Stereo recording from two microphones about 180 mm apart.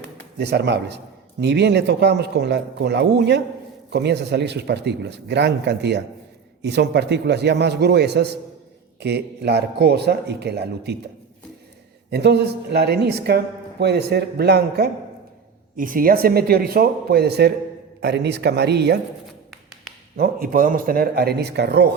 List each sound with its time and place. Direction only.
0.3 s a man's voice: 70° right (ahead or behind)
12.1 s a woman's voice: 65° right (ahead or behind)
15.7 s a woman's voice: 50° right (ahead or behind); by 18.9 s 65° right (ahead or behind)
20.1 s a woman's voice: 60° right (ahead or behind)